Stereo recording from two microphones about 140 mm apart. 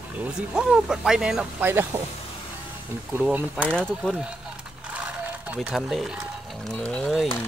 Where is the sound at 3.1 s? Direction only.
10° right (ahead or behind).